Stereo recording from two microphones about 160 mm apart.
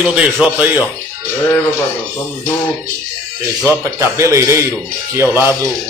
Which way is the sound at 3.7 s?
15° right (ahead or behind).